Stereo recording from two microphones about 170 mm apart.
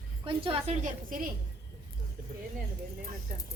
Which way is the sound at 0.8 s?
55° right (ahead or behind).